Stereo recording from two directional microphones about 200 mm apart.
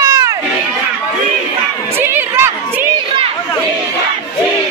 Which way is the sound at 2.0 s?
10° right (ahead or behind).